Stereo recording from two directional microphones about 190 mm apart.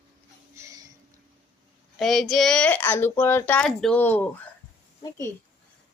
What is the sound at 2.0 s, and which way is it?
A woman's voice, centre (ahead or behind).